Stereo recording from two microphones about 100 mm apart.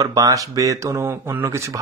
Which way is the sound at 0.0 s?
35° right (ahead or behind).